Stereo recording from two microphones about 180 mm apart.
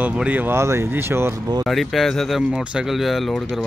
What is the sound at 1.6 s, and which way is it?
Speech, centre (ahead or behind).